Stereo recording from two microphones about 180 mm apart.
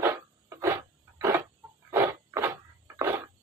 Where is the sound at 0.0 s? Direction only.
15° right (ahead or behind).